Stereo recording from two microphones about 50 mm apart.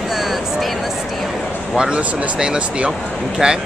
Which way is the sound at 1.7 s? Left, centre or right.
Centre.